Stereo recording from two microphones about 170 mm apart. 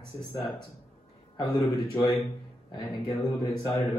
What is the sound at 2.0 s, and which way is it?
Speech, 20° left (ahead or behind).